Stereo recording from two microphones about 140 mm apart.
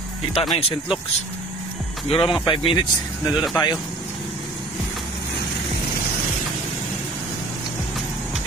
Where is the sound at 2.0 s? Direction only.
40° left (ahead or behind).